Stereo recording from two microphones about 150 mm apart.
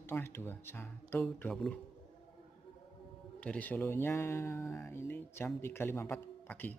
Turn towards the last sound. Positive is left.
turn(degrees=10)  # may be behind; listen again after turning